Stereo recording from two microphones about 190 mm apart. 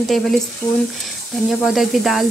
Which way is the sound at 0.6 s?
15° left (ahead or behind).